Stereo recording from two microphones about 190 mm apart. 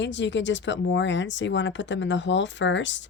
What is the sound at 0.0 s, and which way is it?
Speech, 70° left (ahead or behind).